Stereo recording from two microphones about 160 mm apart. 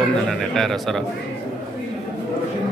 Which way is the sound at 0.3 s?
Centre (ahead or behind).